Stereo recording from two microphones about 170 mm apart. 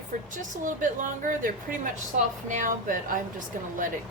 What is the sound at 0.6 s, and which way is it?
A woman's voice, 50° right (ahead or behind).